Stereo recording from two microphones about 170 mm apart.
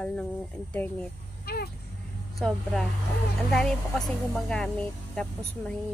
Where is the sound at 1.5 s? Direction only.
65° left (ahead or behind).